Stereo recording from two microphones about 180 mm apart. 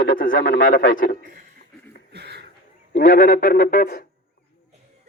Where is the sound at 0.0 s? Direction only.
50° left (ahead or behind).